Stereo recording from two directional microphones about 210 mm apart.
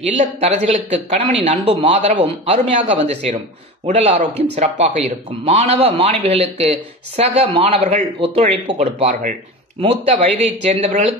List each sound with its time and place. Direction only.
0.0 s speech: 30° right (ahead or behind)